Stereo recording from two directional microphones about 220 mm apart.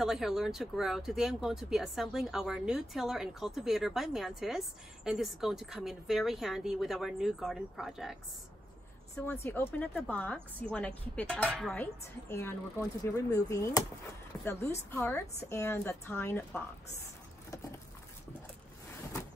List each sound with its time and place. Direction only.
0.0 s speech: centre (ahead or behind)
9.1 s a woman's voice: 10° left (ahead or behind)